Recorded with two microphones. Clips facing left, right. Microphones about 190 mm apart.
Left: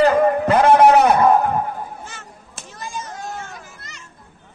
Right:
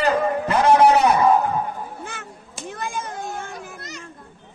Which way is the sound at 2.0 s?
55° right (ahead or behind).